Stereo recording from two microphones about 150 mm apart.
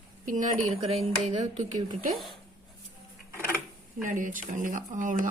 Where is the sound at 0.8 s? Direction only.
40° right (ahead or behind).